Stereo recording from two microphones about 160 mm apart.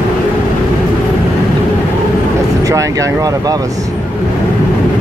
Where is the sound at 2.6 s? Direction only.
20° right (ahead or behind).